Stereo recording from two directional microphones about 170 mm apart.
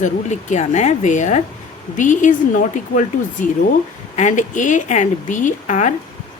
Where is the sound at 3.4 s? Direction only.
50° left (ahead or behind).